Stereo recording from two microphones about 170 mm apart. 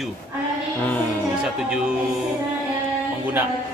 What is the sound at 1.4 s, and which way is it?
Speech, 5° right (ahead or behind).